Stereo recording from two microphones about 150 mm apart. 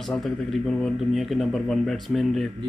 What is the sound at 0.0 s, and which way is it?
Speech, centre (ahead or behind).